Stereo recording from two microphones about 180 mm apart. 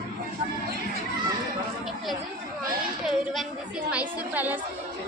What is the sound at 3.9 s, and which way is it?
Speech, 10° right (ahead or behind).